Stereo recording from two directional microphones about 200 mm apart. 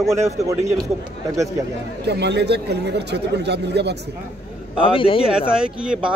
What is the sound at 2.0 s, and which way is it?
Speech, 55° right (ahead or behind).